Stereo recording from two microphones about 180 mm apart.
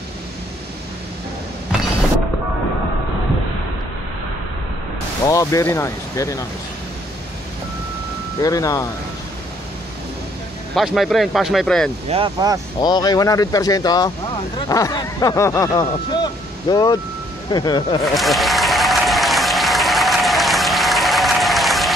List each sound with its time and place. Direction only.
1.7 s a sound: 5° right (ahead or behind)
5.3 s speech: 20° left (ahead or behind)
8.4 s speech: 20° left (ahead or behind)
10.7 s speech: centre (ahead or behind)
12.1 s speech: 35° right (ahead or behind)
12.8 s speech: 20° left (ahead or behind)
18.0 s applause: centre (ahead or behind)